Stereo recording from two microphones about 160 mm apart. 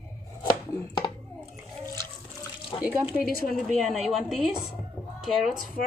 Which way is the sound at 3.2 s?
65° left (ahead or behind).